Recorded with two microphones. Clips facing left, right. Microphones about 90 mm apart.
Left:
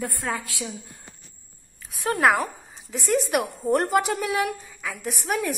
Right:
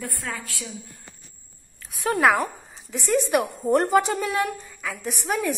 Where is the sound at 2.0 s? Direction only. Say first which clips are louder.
Right 1 dB; centre (ahead or behind).